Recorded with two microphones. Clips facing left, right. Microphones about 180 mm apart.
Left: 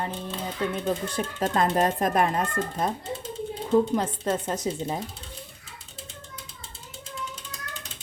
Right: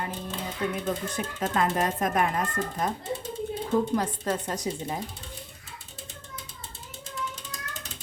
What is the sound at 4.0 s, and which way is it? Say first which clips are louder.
Speech: left 2 dB; 25° left (ahead or behind).